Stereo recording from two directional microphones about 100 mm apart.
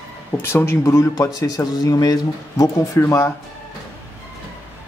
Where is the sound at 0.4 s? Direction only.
25° left (ahead or behind).